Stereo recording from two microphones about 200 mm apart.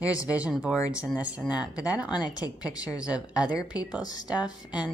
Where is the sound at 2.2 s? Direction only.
20° left (ahead or behind).